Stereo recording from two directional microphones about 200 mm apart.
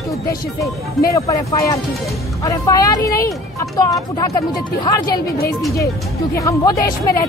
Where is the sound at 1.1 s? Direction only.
15° left (ahead or behind).